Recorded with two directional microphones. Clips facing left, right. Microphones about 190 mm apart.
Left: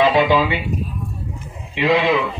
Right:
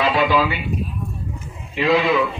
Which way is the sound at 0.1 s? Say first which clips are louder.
Left 2 dB; 20° left (ahead or behind).